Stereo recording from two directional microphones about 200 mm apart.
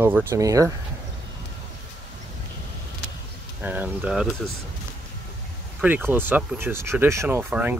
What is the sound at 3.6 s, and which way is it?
Speech, 10° right (ahead or behind).